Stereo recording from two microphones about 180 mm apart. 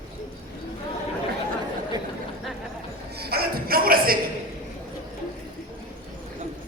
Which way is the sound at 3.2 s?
60° right (ahead or behind).